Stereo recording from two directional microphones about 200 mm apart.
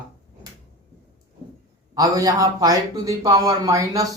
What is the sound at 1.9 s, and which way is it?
A man's voice, 15° right (ahead or behind).